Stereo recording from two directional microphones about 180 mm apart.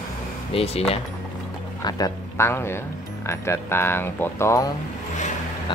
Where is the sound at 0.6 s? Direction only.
30° left (ahead or behind).